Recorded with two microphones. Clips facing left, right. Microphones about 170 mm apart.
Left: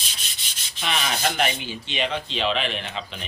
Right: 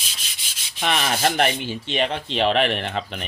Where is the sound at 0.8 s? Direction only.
50° right (ahead or behind).